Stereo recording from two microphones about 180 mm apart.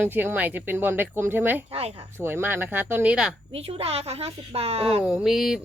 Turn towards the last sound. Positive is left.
turn(degrees=0)  # may be behind; listen again after turning